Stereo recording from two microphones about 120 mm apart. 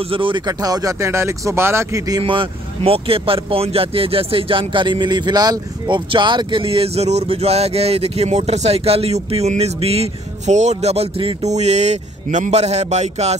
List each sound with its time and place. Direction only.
0.0 s speech: 45° right (ahead or behind)
0.5 s speech: 30° right (ahead or behind)
2.2 s speech: 45° right (ahead or behind)
11.4 s a man's voice: 70° right (ahead or behind)